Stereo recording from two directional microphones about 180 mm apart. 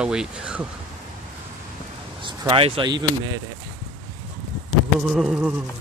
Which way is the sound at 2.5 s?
25° right (ahead or behind).